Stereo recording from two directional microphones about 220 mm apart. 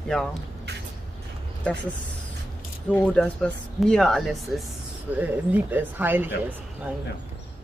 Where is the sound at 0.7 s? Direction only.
50° right (ahead or behind).